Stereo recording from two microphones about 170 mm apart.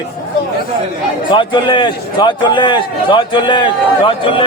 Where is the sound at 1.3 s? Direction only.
30° left (ahead or behind).